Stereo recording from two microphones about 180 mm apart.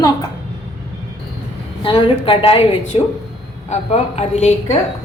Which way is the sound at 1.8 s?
30° left (ahead or behind).